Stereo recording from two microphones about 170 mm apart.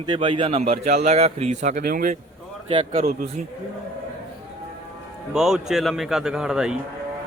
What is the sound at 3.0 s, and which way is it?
Speech, 55° right (ahead or behind).